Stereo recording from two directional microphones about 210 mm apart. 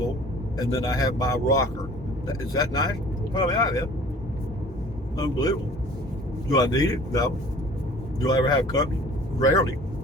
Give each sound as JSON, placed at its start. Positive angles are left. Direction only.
{"t": 0.5, "sound": "speech", "side_deg": 15}
{"t": 5.1, "sound": "speech", "side_deg": 15}